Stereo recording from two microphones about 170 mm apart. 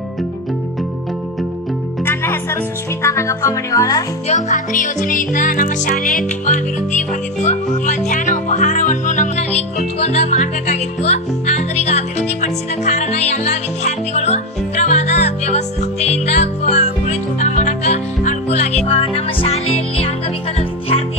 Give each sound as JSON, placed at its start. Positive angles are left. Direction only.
{"t": 2.0, "sound": "speech", "side_deg": 15}
{"t": 4.3, "sound": "music", "side_deg": 45}